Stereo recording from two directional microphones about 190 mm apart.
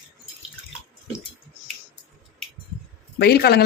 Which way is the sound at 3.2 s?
60° left (ahead or behind).